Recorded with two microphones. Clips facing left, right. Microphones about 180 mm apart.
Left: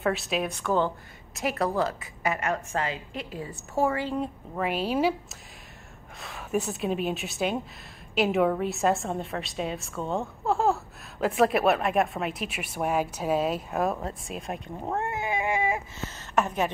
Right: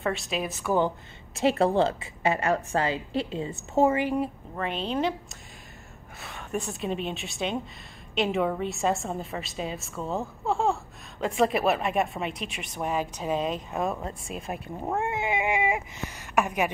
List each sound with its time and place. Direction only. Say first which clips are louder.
0.0 s a woman's voice: left 2 dB; centre (ahead or behind)
1.3 s a woman's voice: right 5 dB; 30° right (ahead or behind)
4.6 s a woman's voice: left 2 dB; 5° left (ahead or behind); by 15.1 s 10° right (ahead or behind)
15.1 s whimper: right 1 dB; 20° right (ahead or behind)